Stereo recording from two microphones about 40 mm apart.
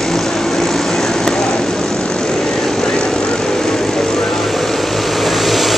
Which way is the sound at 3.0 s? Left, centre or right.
Left.